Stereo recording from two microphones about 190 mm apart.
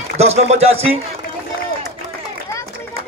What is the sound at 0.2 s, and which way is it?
Speech, 35° right (ahead or behind).